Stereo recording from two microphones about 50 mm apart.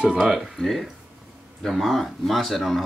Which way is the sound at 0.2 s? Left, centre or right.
Centre.